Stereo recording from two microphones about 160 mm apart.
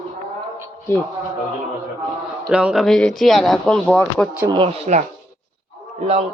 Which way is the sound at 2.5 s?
5° right (ahead or behind).